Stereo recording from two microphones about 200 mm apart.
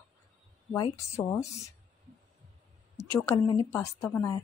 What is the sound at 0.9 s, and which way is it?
Speech, 15° left (ahead or behind).